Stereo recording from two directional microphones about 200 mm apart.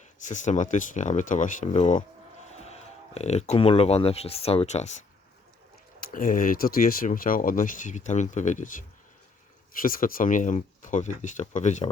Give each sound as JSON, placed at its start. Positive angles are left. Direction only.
{"t": 0.2, "sound": "speech", "side_deg": 40}
{"t": 9.8, "sound": "speech", "side_deg": 45}